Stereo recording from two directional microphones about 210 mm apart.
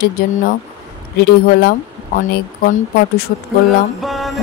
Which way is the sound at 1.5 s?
45° left (ahead or behind).